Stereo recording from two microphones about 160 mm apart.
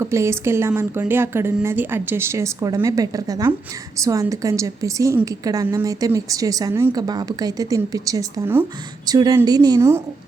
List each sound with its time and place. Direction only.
0.0 s a woman's voice: 15° right (ahead or behind)